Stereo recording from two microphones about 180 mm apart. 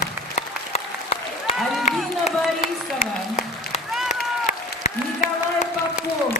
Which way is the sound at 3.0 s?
40° left (ahead or behind).